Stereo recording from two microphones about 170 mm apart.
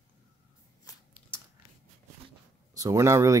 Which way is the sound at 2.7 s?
20° right (ahead or behind).